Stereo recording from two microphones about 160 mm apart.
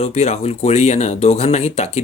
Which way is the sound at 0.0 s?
40° left (ahead or behind).